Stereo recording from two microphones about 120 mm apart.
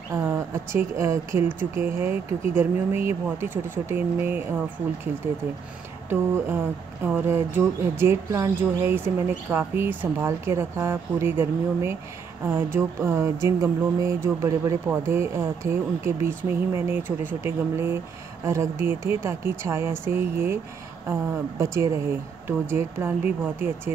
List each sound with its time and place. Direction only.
0.1 s speech: 20° right (ahead or behind)
6.0 s speech: 20° right (ahead or behind)
21.7 s speech: 25° right (ahead or behind)